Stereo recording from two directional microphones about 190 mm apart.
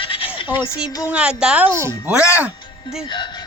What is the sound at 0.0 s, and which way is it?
Bleat, 30° left (ahead or behind).